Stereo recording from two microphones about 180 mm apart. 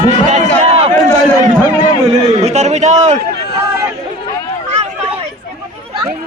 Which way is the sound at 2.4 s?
40° right (ahead or behind).